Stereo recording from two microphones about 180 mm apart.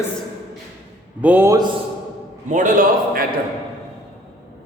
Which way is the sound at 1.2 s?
10° right (ahead or behind).